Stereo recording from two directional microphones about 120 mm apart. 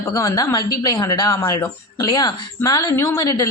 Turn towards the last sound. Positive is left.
turn(degrees=30)  # may be behind; listen again after turning